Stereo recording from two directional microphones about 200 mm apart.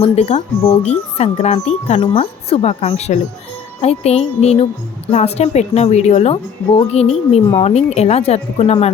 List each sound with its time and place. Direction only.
0.0 s speech: 35° left (ahead or behind)